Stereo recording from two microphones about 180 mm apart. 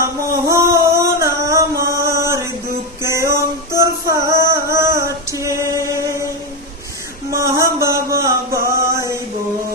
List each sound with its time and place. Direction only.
0.0 s singing: 15° right (ahead or behind)
3.0 s music: 15° right (ahead or behind)
3.8 s female singing: 15° right (ahead or behind)
7.3 s a sound: 15° right (ahead or behind)